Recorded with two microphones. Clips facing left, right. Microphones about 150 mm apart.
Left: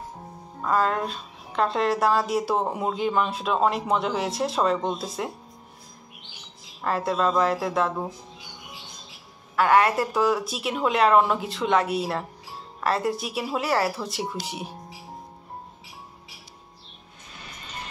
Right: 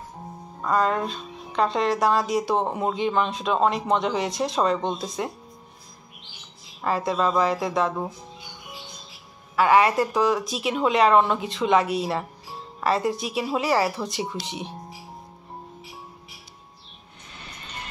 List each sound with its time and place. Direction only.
0.7 s speech: centre (ahead or behind)
6.8 s speech: centre (ahead or behind)
9.6 s speech: centre (ahead or behind)